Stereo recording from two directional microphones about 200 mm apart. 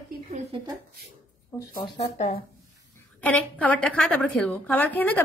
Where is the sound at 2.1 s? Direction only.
35° left (ahead or behind).